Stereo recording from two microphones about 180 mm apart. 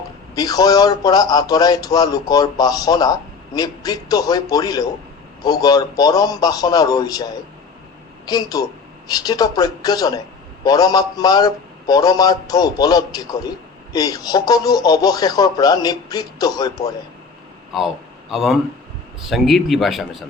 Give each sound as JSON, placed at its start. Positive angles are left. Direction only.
{"t": 0.3, "sound": "a man's voice", "side_deg": 20}
{"t": 17.7, "sound": "a man's voice", "side_deg": 0}